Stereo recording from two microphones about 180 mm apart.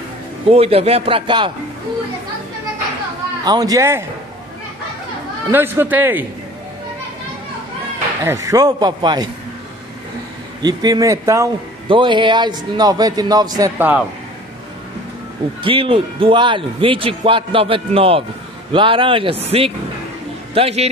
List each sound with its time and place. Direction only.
0.5 s a man's voice: 35° right (ahead or behind)
3.4 s a man's voice: 20° right (ahead or behind)
5.5 s a man's voice: 10° right (ahead or behind)
8.2 s a man's voice: 15° right (ahead or behind)
10.6 s a man's voice: 20° right (ahead or behind)
15.6 s a man's voice: 30° right (ahead or behind)